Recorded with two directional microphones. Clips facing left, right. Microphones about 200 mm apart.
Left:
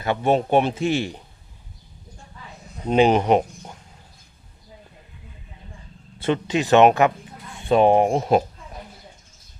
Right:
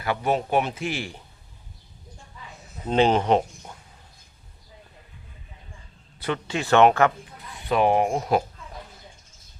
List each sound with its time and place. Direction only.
0.0 s a man's voice: 25° left (ahead or behind)
2.8 s speech: 15° left (ahead or behind)
6.1 s a man's voice: 25° left (ahead or behind)